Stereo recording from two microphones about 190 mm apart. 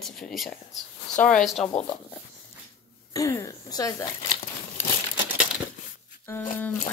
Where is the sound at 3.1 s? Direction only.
15° left (ahead or behind).